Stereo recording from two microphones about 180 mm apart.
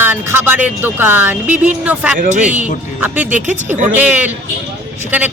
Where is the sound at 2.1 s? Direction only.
45° right (ahead or behind).